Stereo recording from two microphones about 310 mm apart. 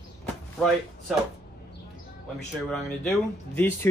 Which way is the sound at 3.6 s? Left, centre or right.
Centre.